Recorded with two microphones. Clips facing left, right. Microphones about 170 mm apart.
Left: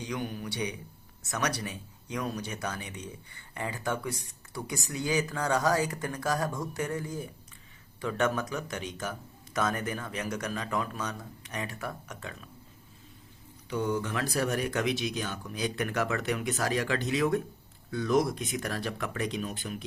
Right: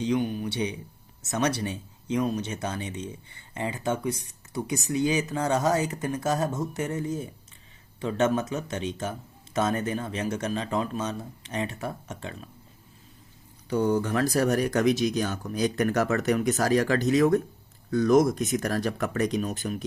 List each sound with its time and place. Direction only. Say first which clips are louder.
0.0 s speech: right 9 dB; 25° right (ahead or behind)
13.7 s speech: right 6 dB; 40° right (ahead or behind)